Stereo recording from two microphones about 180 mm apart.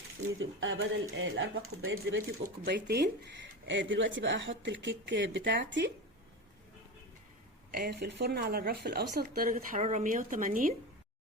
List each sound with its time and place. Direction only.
0.3 s speech: 90° right
2.6 s speech: 65° right (ahead or behind)
7.7 s speech: 60° right (ahead or behind)